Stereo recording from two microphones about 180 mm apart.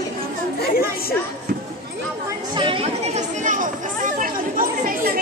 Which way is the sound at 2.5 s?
30° right (ahead or behind).